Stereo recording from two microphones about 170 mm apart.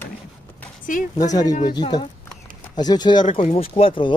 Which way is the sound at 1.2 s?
20° left (ahead or behind).